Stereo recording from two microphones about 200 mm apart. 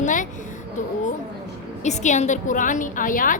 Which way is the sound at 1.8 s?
35° left (ahead or behind).